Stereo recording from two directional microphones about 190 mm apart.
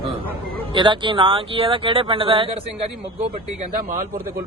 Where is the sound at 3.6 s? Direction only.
45° right (ahead or behind).